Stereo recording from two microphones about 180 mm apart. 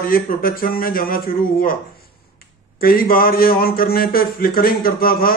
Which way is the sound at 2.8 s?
55° left (ahead or behind).